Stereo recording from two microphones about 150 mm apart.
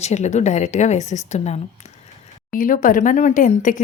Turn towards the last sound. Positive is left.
turn(degrees=60)  # may be behind; listen again after turning